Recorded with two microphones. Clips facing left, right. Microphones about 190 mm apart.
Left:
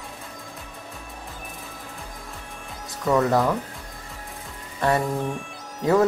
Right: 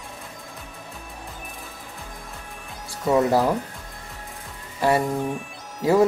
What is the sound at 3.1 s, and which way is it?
Speech, 20° right (ahead or behind).